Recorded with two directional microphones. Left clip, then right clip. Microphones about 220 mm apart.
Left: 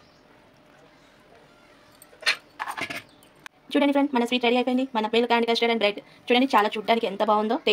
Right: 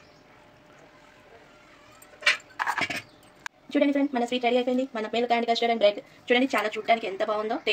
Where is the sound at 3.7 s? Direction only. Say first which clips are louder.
Left 2 dB; 40° left (ahead or behind).